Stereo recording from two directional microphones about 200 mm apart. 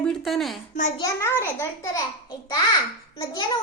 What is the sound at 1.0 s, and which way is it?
A child's voice, 15° left (ahead or behind).